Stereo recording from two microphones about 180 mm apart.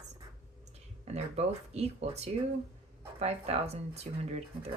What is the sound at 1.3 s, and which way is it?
Speech, 35° right (ahead or behind).